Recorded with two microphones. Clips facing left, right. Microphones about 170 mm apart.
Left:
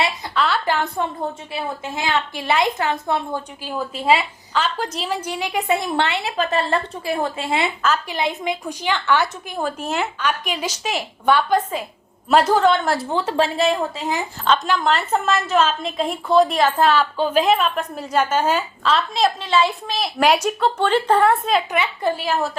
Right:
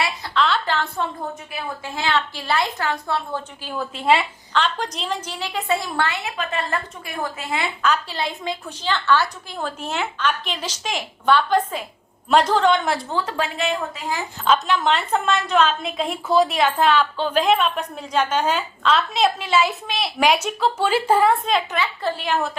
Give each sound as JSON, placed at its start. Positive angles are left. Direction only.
{"t": 0.3, "sound": "a woman's voice", "side_deg": 5}
{"t": 13.1, "sound": "a woman's voice", "side_deg": 25}
{"t": 14.4, "sound": "a woman's voice", "side_deg": -5}
{"t": 21.8, "sound": "a woman's voice", "side_deg": 15}